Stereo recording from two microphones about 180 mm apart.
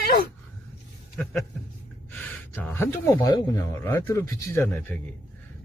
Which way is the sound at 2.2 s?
10° left (ahead or behind).